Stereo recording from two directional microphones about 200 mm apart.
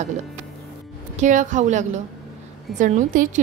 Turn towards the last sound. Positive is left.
turn(degrees=-40)  # may be behind; listen again after turning